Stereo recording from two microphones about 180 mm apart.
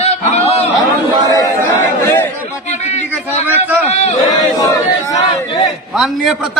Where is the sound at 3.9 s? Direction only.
40° left (ahead or behind).